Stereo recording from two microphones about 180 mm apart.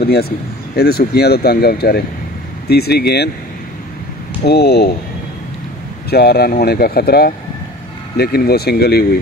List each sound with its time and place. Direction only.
0.0 s speech: 60° left (ahead or behind)
4.5 s speech: 60° left (ahead or behind)
6.0 s speech: 60° left (ahead or behind)